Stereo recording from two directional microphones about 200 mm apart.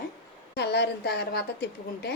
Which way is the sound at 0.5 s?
60° left (ahead or behind).